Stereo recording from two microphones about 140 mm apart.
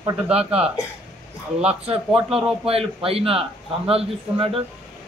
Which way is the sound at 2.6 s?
45° right (ahead or behind).